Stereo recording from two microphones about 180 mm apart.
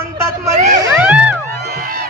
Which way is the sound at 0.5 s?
40° right (ahead or behind).